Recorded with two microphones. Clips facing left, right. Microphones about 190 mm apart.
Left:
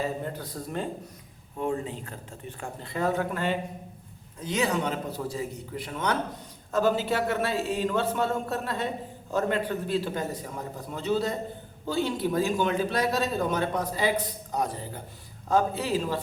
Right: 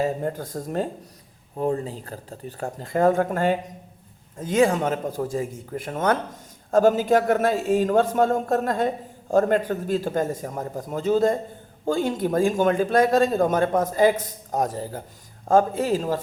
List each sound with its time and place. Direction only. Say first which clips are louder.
0.0 s a man's voice: right 6 dB; 45° right (ahead or behind)